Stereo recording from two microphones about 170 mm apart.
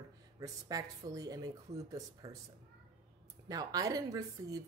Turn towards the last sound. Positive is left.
turn(degrees=-20)  # may be behind; listen again after turning